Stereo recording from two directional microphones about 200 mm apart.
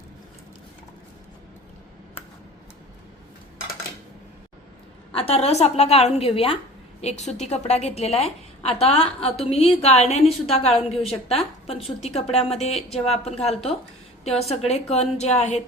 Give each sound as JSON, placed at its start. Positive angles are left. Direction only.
{"t": 5.1, "sound": "a woman's voice", "side_deg": 30}